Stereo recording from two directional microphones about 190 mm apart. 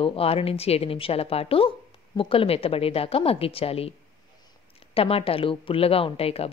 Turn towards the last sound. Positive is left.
turn(degrees=30)  # may be behind; listen again after turning